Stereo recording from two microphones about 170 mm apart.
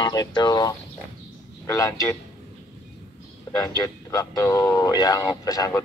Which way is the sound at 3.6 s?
20° left (ahead or behind).